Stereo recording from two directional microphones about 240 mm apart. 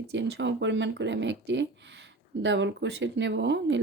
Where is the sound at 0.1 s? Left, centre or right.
Right.